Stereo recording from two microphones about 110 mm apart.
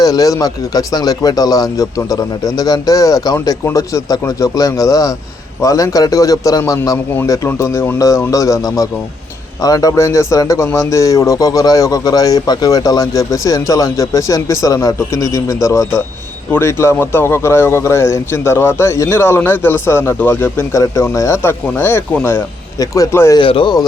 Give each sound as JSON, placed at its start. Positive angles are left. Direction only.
{"t": 0.0, "sound": "a man's voice", "side_deg": 30}
{"t": 23.4, "sound": "speech", "side_deg": 50}